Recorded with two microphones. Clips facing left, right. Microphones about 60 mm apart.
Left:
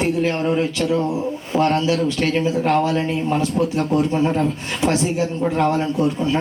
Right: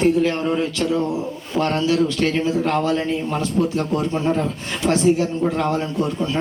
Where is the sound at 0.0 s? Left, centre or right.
Left.